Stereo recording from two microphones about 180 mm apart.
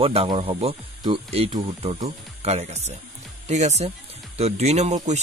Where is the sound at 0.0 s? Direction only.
30° right (ahead or behind).